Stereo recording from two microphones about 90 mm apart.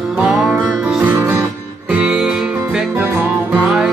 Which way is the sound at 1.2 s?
25° right (ahead or behind).